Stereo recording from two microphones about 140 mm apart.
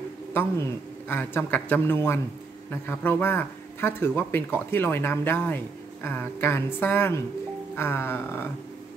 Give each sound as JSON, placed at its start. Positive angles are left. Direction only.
{"t": 0.3, "sound": "speech", "side_deg": 15}